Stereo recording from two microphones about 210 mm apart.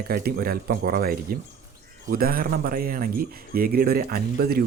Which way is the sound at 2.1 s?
45° right (ahead or behind).